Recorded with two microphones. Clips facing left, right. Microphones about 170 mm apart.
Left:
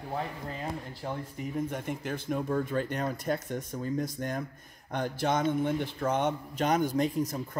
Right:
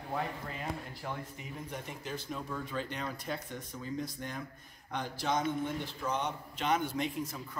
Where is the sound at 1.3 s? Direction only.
50° left (ahead or behind).